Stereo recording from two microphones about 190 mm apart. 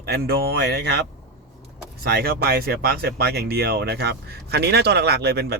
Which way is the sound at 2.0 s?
55° right (ahead or behind).